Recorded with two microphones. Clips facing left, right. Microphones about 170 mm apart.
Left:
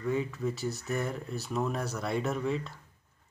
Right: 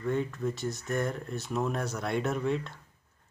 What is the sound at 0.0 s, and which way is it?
Speech, 5° left (ahead or behind).